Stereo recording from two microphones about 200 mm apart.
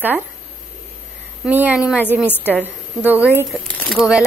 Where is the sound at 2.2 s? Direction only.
10° left (ahead or behind).